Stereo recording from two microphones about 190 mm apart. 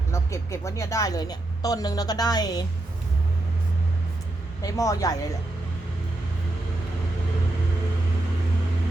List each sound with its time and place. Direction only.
0.1 s speech: 15° left (ahead or behind)
4.6 s speech: 20° left (ahead or behind)